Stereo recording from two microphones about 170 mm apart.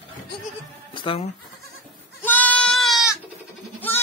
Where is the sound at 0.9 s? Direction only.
30° left (ahead or behind).